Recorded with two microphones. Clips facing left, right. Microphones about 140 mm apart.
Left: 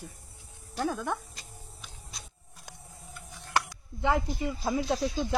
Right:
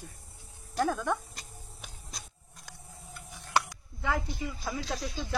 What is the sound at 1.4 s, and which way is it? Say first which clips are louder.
Vehicle: even; 45° right (ahead or behind).